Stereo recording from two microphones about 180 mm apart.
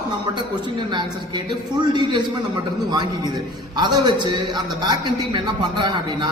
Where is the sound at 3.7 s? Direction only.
25° right (ahead or behind).